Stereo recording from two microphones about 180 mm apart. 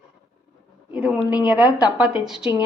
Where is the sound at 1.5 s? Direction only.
10° right (ahead or behind).